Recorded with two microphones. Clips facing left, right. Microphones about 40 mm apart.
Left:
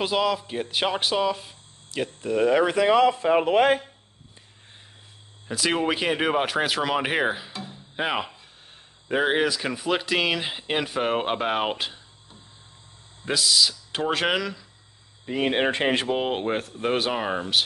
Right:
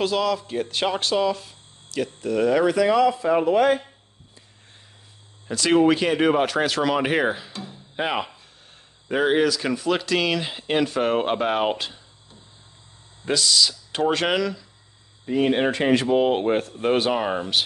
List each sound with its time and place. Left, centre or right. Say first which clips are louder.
0.0 s speech: right 1 dB; centre; by 3.8 s left
5.5 s speech: right 6 dB; centre; by 16.1 s left
16.1 s speech: right 5 dB; centre